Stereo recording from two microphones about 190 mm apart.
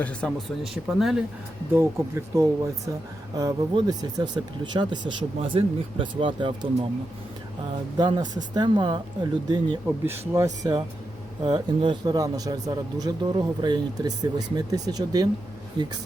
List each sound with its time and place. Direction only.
0.0 s speech: 5° left (ahead or behind)
1.7 s speech: 15° right (ahead or behind)
7.9 s speech: 20° right (ahead or behind)